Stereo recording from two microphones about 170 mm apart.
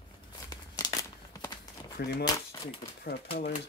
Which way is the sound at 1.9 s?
65° left (ahead or behind).